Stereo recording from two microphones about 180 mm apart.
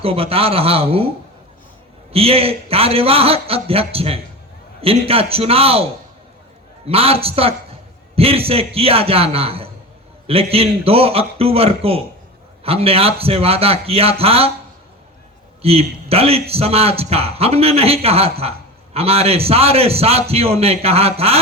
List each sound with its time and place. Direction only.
0.0 s a man's voice: 30° right (ahead or behind)
2.1 s a man's voice: 30° right (ahead or behind)
15.6 s a man's voice: 35° right (ahead or behind)